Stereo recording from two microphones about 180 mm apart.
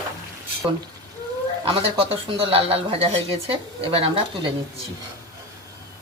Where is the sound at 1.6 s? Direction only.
30° right (ahead or behind).